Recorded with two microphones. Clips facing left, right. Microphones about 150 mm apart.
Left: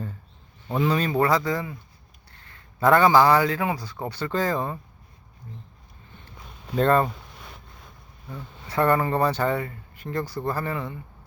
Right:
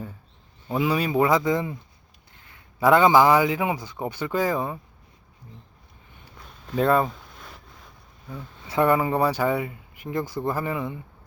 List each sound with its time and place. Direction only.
0.7 s a man's voice: 10° right (ahead or behind)
6.7 s speech: 5° right (ahead or behind)
7.1 s a sound: centre (ahead or behind)
8.6 s speech: 10° right (ahead or behind)